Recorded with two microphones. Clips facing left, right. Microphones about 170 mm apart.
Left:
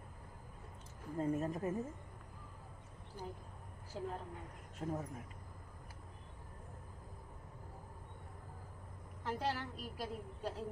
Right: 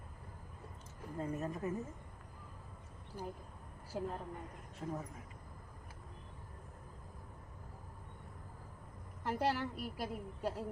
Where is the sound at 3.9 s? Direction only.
55° right (ahead or behind).